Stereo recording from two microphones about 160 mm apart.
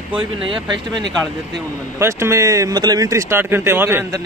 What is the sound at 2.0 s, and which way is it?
Speech, 15° right (ahead or behind).